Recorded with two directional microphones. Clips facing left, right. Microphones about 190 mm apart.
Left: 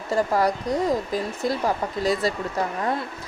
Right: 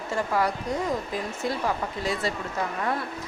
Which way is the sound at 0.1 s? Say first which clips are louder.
Left 5 dB; 40° left (ahead or behind).